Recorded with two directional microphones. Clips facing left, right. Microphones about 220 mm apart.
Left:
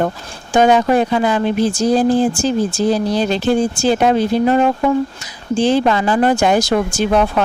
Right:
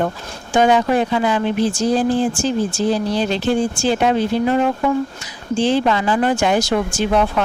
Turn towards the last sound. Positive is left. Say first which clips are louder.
# left 2 dB
turn(degrees=40)  # may be behind; listen again after turning